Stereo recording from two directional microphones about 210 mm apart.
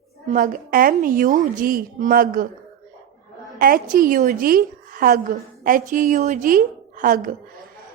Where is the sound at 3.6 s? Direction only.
40° right (ahead or behind).